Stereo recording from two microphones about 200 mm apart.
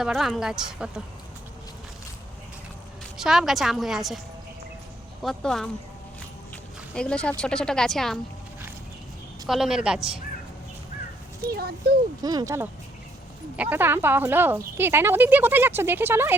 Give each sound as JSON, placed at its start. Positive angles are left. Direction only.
{"t": 0.0, "sound": "speech", "side_deg": 0}
{"t": 3.2, "sound": "speech", "side_deg": 0}
{"t": 5.2, "sound": "speech", "side_deg": 0}
{"t": 6.9, "sound": "speech", "side_deg": 5}
{"t": 9.5, "sound": "speech", "side_deg": 0}
{"t": 11.5, "sound": "speech", "side_deg": -50}
{"t": 12.2, "sound": "speech", "side_deg": -20}